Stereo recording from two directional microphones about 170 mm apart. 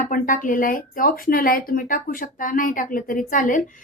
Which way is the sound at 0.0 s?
50° left (ahead or behind).